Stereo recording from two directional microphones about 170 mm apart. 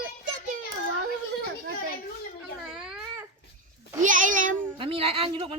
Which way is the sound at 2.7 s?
5° right (ahead or behind).